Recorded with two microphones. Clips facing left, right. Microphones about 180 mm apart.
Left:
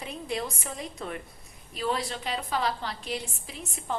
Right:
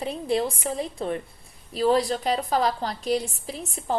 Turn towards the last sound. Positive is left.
turn(degrees=-35)  # may be behind; listen again after turning